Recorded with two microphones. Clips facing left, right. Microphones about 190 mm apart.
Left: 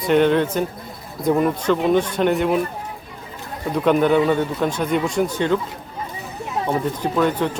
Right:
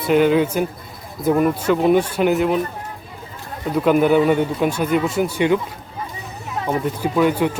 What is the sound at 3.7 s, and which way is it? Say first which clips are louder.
Speech: right 1 dB; 5° right (ahead or behind).